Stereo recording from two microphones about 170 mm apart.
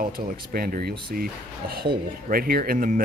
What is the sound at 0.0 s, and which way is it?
Speech, 55° right (ahead or behind).